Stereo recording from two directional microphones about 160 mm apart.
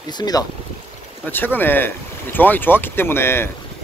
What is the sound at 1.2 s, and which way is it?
Speech, 10° left (ahead or behind).